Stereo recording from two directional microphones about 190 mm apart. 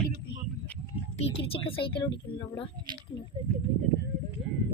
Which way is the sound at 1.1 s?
30° left (ahead or behind).